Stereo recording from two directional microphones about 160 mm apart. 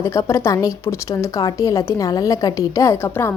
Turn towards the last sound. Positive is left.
turn(degrees=15)  # may be behind; listen again after turning